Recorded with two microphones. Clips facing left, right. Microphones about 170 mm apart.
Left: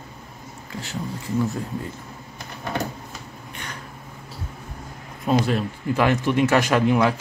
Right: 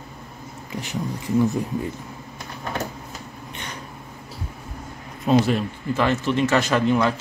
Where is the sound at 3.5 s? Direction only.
20° right (ahead or behind).